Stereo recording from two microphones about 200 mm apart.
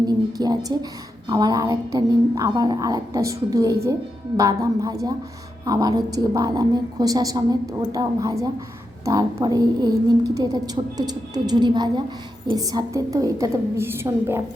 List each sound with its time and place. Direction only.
0.0 s a woman's voice: 20° right (ahead or behind)